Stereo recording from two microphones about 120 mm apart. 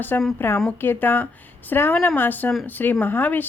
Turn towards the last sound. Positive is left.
turn(degrees=15)  # may be behind; listen again after turning